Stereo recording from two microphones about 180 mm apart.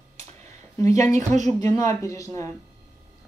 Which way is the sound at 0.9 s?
40° right (ahead or behind).